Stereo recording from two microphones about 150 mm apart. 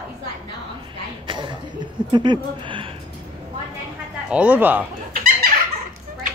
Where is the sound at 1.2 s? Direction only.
30° right (ahead or behind).